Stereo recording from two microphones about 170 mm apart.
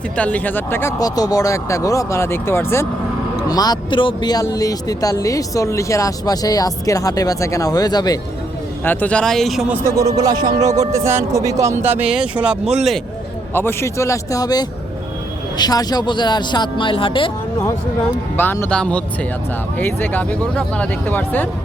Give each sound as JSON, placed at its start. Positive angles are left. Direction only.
{"t": 0.2, "sound": "speech", "side_deg": 10}
{"t": 8.8, "sound": "speech", "side_deg": 10}
{"t": 11.9, "sound": "speech", "side_deg": -5}
{"t": 13.5, "sound": "speech", "side_deg": 10}
{"t": 18.3, "sound": "speech", "side_deg": 15}